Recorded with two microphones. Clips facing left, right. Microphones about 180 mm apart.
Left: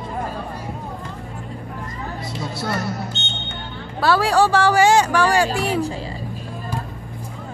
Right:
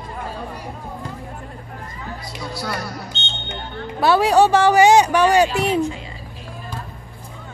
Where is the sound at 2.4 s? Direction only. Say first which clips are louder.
Left 2 dB; 25° left (ahead or behind).